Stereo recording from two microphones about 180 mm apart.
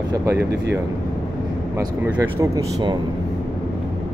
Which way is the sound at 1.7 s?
15° right (ahead or behind).